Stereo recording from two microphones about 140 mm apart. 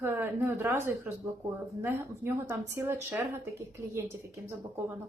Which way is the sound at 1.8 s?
15° right (ahead or behind).